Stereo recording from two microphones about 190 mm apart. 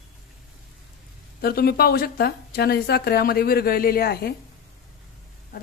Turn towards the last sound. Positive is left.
turn(degrees=55)  # may be behind; listen again after turning